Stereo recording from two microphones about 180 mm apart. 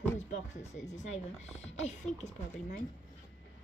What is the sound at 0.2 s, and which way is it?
Music, 40° left (ahead or behind).